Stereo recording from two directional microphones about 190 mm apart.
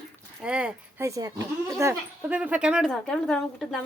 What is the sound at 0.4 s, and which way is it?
Speech, 5° right (ahead or behind).